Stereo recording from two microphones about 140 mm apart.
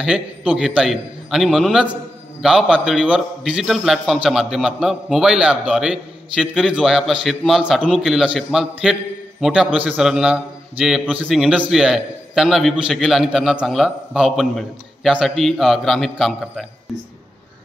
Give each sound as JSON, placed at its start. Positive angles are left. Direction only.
{"t": 0.0, "sound": "a man's voice", "side_deg": -5}